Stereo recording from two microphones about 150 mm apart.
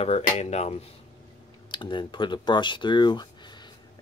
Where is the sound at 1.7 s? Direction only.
30° left (ahead or behind).